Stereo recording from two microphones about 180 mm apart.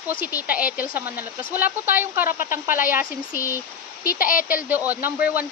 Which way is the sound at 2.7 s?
50° left (ahead or behind).